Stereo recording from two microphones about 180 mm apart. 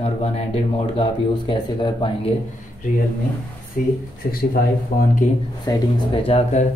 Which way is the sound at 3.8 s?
50° left (ahead or behind).